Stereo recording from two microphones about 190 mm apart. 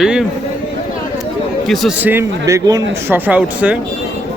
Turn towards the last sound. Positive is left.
turn(degrees=-5)  # may be behind; listen again after turning